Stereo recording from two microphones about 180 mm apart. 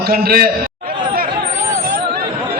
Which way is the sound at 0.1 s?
55° right (ahead or behind).